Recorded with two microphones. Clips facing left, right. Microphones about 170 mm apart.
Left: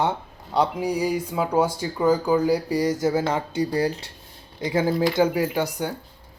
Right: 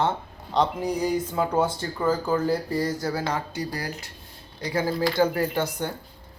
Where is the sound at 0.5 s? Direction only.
10° left (ahead or behind).